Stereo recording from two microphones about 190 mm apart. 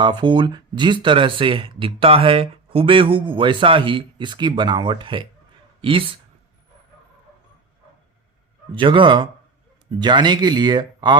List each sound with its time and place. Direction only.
0.0 s speech: 25° right (ahead or behind)
8.7 s speech: 25° right (ahead or behind)